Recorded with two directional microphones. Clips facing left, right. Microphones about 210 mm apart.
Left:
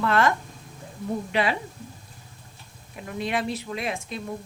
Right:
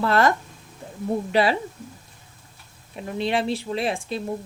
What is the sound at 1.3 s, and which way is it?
Speech, 35° right (ahead or behind).